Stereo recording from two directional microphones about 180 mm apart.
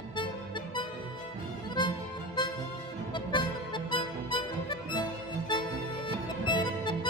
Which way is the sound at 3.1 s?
25° left (ahead or behind).